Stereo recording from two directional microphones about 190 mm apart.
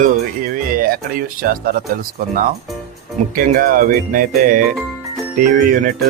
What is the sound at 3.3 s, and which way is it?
Speech, 45° right (ahead or behind).